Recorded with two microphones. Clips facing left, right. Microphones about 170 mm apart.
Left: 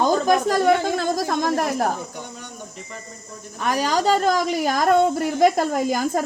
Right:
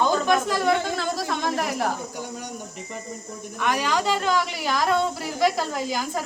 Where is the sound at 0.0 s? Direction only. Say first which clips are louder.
Left 3 dB; 40° left (ahead or behind).